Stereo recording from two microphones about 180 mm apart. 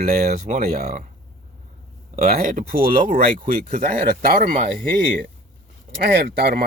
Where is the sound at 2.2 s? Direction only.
50° right (ahead or behind).